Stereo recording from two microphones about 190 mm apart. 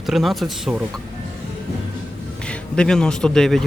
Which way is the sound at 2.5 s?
5° left (ahead or behind).